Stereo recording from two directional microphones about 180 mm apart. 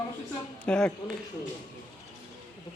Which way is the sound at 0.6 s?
5° left (ahead or behind).